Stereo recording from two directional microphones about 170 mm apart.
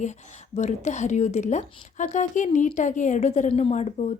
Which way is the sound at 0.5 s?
45° left (ahead or behind).